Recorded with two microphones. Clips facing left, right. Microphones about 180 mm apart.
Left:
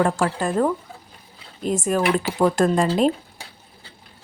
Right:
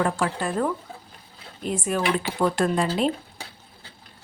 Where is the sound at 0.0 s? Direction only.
45° left (ahead or behind).